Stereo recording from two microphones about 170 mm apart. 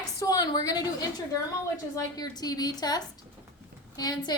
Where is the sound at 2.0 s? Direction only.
25° left (ahead or behind).